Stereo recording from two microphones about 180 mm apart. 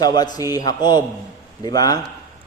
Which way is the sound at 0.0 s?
20° left (ahead or behind).